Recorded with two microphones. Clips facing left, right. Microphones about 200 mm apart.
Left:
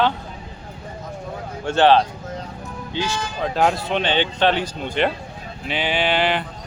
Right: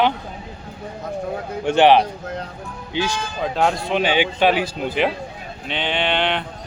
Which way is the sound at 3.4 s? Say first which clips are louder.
Even; centre (ahead or behind).